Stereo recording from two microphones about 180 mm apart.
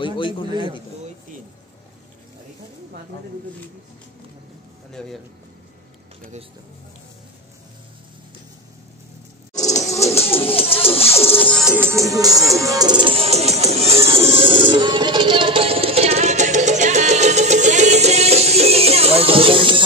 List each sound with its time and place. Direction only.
0.0 s a man's voice: 25° left (ahead or behind)
0.5 s a man's voice: 25° right (ahead or behind)
5.0 s a man's voice: 5° left (ahead or behind)
9.5 s a sound: 20° left (ahead or behind)
9.8 s music: 35° left (ahead or behind)
11.5 s music: 5° left (ahead or behind)
11.8 s music: 15° right (ahead or behind)